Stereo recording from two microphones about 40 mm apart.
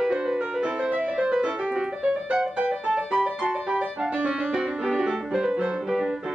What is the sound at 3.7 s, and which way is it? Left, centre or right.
Music, right.